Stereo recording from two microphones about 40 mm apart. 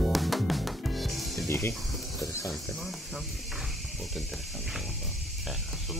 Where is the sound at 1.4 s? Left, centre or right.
Left.